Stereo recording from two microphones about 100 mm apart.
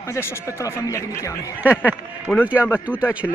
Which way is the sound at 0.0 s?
25° left (ahead or behind).